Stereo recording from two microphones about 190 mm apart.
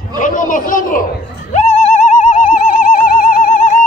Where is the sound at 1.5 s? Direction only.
35° left (ahead or behind).